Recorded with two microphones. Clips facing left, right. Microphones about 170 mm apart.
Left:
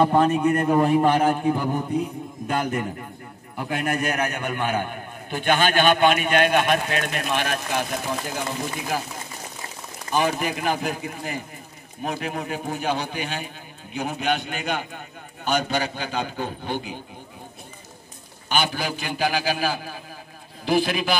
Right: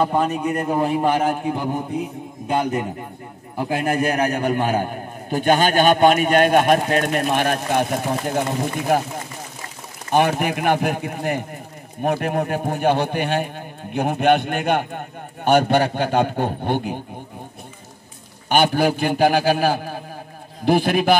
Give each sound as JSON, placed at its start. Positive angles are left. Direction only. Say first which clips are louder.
{"t": 0.0, "sound": "a man's voice", "louder": "left 2 dB", "side_deg": -5}
{"t": 10.4, "sound": "a man's voice", "louder": "right 5 dB", "side_deg": -60}
{"t": 18.5, "sound": "a man's voice", "louder": "right 8 dB", "side_deg": -55}